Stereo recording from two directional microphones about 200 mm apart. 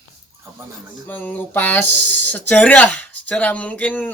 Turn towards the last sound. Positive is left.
turn(degrees=10)  # may be behind; listen again after turning